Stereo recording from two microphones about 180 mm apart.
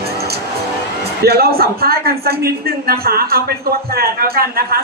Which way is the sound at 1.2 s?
60° right (ahead or behind).